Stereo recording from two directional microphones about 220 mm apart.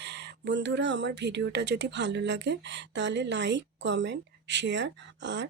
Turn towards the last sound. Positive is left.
turn(degrees=-55)  # may be behind; listen again after turning